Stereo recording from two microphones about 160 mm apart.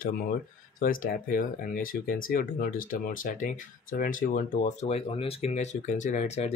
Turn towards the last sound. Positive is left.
turn(degrees=45)  # may be behind; listen again after turning